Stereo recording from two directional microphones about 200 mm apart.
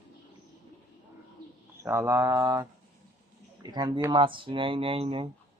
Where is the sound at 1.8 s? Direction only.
15° right (ahead or behind).